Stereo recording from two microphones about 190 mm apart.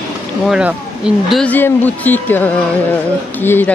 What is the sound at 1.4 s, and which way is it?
A woman's voice, 10° left (ahead or behind).